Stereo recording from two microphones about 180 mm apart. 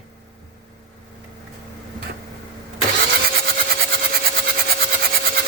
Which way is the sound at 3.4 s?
55° right (ahead or behind).